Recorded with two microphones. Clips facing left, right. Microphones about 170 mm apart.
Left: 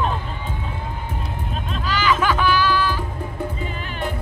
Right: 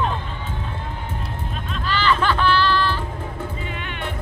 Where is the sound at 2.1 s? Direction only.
10° left (ahead or behind).